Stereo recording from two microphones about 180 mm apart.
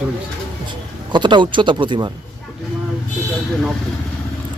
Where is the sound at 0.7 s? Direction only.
25° right (ahead or behind).